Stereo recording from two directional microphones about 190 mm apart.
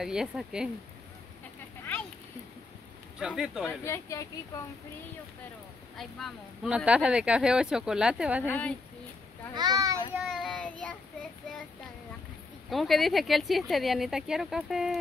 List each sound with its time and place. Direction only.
0.0 s speech: 5° right (ahead or behind)
3.2 s speech: 5° right (ahead or behind)
3.8 s speech: 15° left (ahead or behind)
5.9 s speech: centre (ahead or behind)
8.5 s speech: 5° left (ahead or behind)
9.6 s a child's voice: 20° right (ahead or behind)
10.1 s child singing: centre (ahead or behind)
12.6 s speech: centre (ahead or behind)